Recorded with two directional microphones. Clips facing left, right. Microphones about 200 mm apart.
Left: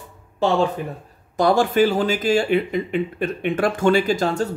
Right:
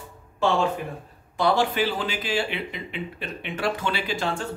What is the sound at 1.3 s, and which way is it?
Speech, 45° left (ahead or behind).